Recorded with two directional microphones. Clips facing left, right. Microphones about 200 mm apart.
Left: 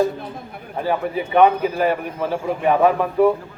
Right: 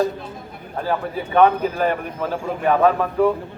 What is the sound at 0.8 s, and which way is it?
A man's voice, 15° left (ahead or behind).